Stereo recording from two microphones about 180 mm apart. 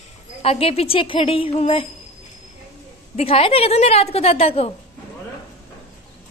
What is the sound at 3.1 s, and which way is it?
A woman's voice, 30° left (ahead or behind).